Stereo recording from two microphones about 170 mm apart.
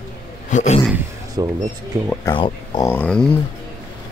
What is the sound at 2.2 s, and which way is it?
Speech, 25° left (ahead or behind).